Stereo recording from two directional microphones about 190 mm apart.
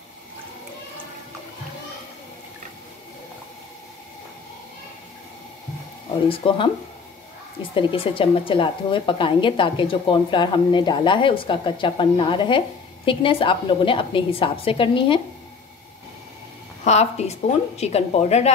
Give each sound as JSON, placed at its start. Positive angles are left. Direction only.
{"t": 6.2, "sound": "a woman's voice", "side_deg": 30}
{"t": 7.7, "sound": "a woman's voice", "side_deg": 30}
{"t": 16.8, "sound": "a woman's voice", "side_deg": 35}